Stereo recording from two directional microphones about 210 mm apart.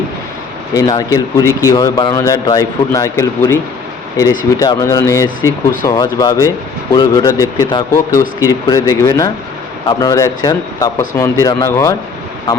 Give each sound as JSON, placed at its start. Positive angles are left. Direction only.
{"t": 0.7, "sound": "speech", "side_deg": 20}